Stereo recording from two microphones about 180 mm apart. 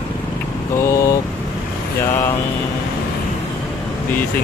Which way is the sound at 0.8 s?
15° left (ahead or behind).